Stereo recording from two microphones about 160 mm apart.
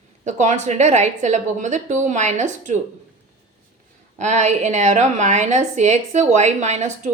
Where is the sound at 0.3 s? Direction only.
50° right (ahead or behind).